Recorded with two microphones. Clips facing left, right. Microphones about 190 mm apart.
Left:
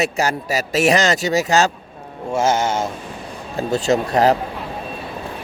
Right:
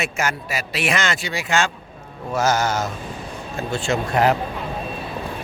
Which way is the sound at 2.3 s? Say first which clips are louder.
Left 2 dB; 25° left (ahead or behind).